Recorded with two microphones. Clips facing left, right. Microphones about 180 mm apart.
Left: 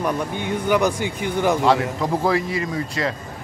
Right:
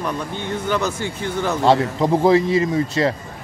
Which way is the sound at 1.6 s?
25° right (ahead or behind).